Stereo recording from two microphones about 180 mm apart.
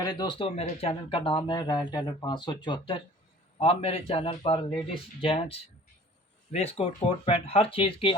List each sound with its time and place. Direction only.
0.0 s speech: 20° left (ahead or behind)